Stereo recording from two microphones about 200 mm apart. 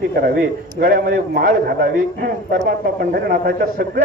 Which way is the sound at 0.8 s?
45° right (ahead or behind).